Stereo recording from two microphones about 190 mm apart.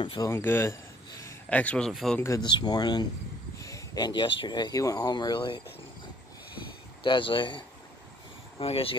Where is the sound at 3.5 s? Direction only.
15° left (ahead or behind).